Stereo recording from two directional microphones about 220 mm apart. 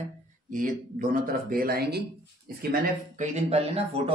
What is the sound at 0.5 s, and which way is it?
Speech, 40° right (ahead or behind).